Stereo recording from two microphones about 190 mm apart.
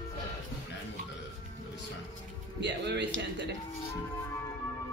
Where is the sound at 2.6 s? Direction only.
65° right (ahead or behind).